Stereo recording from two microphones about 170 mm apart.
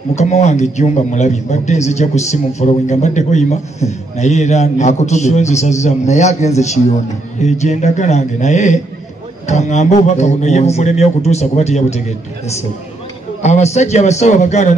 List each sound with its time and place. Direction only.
0.1 s a man's voice: 40° left (ahead or behind)
13.4 s a man's voice: 40° left (ahead or behind)